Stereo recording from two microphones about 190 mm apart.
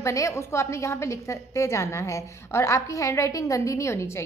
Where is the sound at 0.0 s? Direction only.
15° left (ahead or behind).